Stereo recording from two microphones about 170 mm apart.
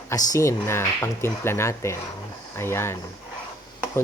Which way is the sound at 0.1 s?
20° left (ahead or behind).